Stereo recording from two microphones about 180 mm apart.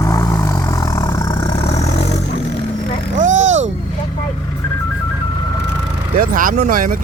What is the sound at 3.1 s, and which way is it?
Vehicle, 45° right (ahead or behind).